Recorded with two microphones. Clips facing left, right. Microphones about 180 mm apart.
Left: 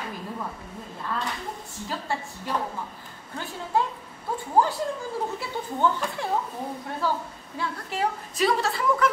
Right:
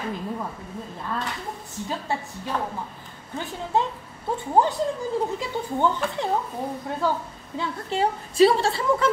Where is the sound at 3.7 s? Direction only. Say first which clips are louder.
Right 1 dB; 20° right (ahead or behind).